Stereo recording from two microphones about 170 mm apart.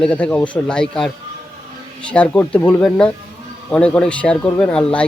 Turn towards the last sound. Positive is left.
turn(degrees=5)  # may be behind; listen again after turning